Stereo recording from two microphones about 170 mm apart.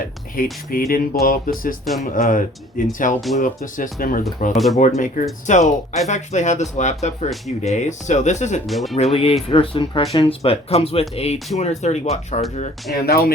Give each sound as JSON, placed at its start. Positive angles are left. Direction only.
{"t": 0.4, "sound": "a sound", "side_deg": 55}
{"t": 1.8, "sound": "speech", "side_deg": 0}
{"t": 2.1, "sound": "speech", "side_deg": 50}
{"t": 4.5, "sound": "speech", "side_deg": 0}
{"t": 4.9, "sound": "speech", "side_deg": 50}
{"t": 8.6, "sound": "speech", "side_deg": 0}
{"t": 9.0, "sound": "speech", "side_deg": 35}
{"t": 12.9, "sound": "a sound", "side_deg": 65}